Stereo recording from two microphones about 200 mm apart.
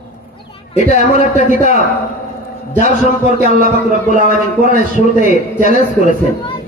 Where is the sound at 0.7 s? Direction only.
35° left (ahead or behind).